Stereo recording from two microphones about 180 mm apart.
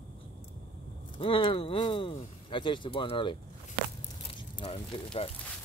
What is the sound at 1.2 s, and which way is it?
Speech, 30° left (ahead or behind).